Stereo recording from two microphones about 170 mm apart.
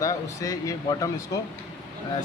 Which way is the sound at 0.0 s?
20° left (ahead or behind).